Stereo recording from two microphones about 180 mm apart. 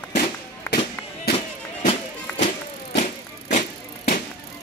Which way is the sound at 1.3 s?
35° left (ahead or behind).